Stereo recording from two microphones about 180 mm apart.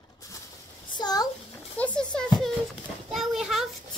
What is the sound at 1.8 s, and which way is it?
Speech, 5° left (ahead or behind).